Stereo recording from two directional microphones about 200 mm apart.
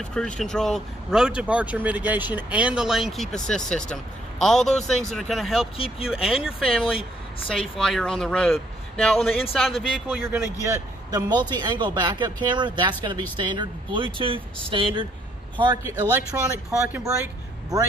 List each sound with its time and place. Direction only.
0.1 s a man's voice: 5° left (ahead or behind); by 15.8 s 25° right (ahead or behind)
15.8 s a man's voice: 15° right (ahead or behind)